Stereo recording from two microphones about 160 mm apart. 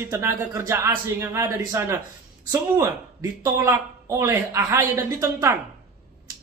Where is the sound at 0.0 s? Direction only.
15° right (ahead or behind).